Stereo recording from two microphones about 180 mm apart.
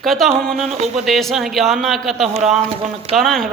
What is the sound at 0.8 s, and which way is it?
Speech, 35° right (ahead or behind).